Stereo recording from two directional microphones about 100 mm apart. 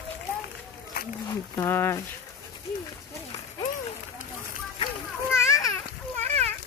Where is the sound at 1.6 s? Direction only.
25° left (ahead or behind).